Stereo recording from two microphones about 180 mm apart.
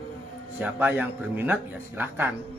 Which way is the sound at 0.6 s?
10° right (ahead or behind).